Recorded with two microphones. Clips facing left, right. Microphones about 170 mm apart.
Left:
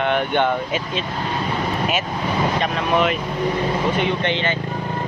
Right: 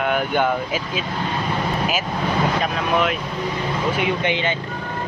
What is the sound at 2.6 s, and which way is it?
Speech, centre (ahead or behind).